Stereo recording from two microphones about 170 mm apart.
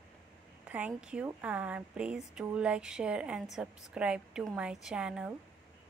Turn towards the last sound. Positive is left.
turn(degrees=-5)  # may be behind; listen again after turning